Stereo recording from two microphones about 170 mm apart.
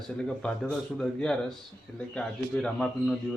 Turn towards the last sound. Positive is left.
turn(degrees=5)  # may be behind; listen again after turning